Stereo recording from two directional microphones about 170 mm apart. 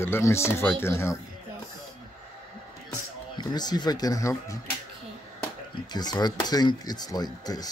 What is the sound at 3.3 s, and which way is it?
Speech, 25° left (ahead or behind).